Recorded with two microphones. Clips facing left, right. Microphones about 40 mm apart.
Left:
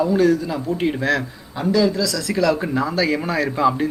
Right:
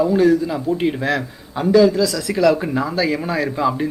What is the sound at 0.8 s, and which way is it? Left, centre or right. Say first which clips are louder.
Speech: left 3 dB; centre.